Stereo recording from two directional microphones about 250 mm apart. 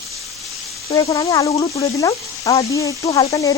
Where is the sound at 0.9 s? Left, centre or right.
Centre.